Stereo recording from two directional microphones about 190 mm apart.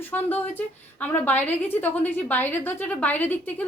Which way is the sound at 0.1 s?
10° left (ahead or behind).